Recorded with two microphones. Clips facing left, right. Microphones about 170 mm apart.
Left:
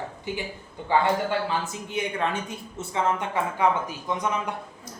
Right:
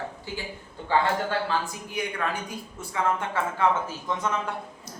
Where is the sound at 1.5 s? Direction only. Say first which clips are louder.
Even; 25° left (ahead or behind).